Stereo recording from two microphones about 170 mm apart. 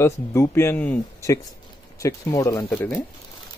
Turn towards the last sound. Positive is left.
turn(degrees=10)  # may be behind; listen again after turning